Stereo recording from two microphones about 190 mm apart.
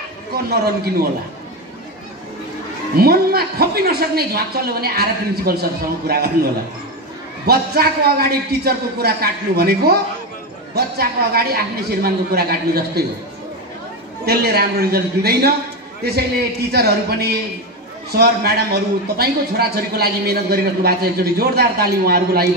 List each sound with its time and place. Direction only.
0.3 s a woman's voice: 55° right (ahead or behind)
3.0 s a man's voice: 55° right (ahead or behind)
7.4 s a man's voice: 55° right (ahead or behind)
14.2 s a woman's voice: 55° right (ahead or behind)